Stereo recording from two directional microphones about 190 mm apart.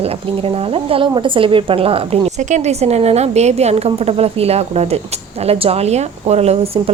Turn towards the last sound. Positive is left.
turn(degrees=-30)  # may be behind; listen again after turning